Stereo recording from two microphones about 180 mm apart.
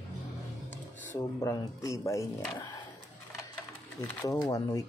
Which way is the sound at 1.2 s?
15° left (ahead or behind).